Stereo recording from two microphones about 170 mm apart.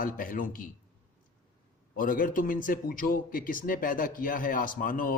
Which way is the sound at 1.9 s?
55° left (ahead or behind).